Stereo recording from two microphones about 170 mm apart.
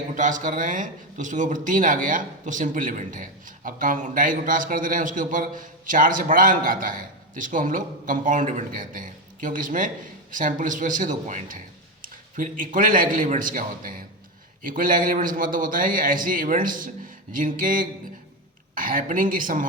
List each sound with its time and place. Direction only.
0.1 s speech: 50° right (ahead or behind)